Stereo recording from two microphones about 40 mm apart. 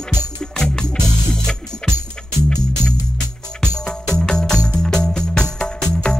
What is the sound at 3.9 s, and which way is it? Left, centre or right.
Music, centre.